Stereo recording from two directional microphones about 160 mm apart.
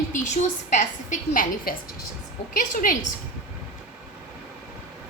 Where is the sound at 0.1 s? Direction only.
50° left (ahead or behind).